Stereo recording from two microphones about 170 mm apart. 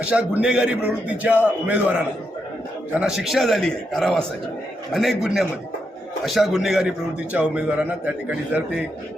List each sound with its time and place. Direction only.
0.0 s a man's voice: 5° right (ahead or behind)
3.0 s a man's voice: 5° right (ahead or behind)